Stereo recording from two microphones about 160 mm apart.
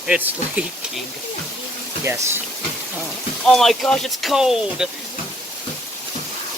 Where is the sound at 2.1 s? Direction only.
15° right (ahead or behind).